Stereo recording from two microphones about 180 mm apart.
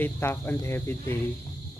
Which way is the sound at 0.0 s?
10° left (ahead or behind).